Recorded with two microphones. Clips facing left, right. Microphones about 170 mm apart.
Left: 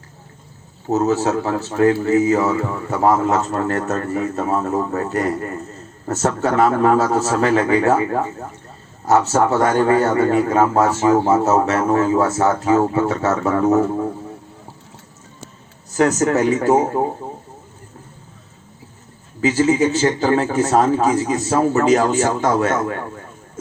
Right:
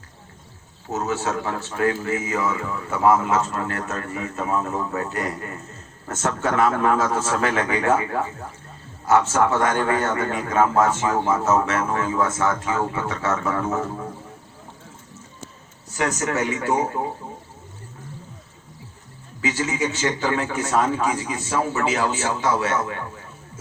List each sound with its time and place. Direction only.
0.9 s a man's voice: 35° left (ahead or behind)
16.0 s a man's voice: 40° left (ahead or behind)
19.4 s a man's voice: 40° left (ahead or behind)